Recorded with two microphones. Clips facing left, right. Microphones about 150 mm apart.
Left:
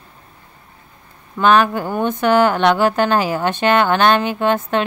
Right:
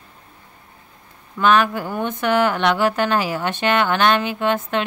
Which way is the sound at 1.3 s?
35° left (ahead or behind).